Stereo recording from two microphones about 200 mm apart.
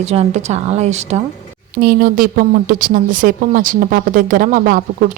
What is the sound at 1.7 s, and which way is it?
A woman's voice, 45° right (ahead or behind).